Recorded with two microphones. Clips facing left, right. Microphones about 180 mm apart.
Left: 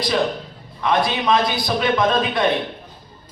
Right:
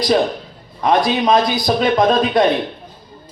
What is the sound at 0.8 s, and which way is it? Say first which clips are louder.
A man's voice: right 4 dB; 40° right (ahead or behind).